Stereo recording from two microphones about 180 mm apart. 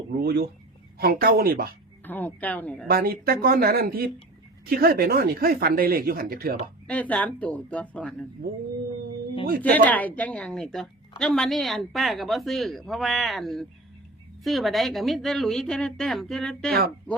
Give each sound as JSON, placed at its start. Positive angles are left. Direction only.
{"t": 0.2, "sound": "speech", "side_deg": -60}
{"t": 2.0, "sound": "a woman's voice", "side_deg": 10}
{"t": 2.9, "sound": "speech", "side_deg": -55}
{"t": 6.8, "sound": "a woman's voice", "side_deg": 10}
{"t": 8.4, "sound": "speech", "side_deg": -55}
{"t": 9.6, "sound": "a woman's voice", "side_deg": 10}